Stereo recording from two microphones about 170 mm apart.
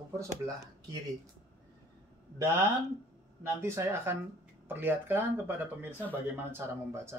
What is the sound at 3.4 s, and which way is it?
Speech, 15° right (ahead or behind).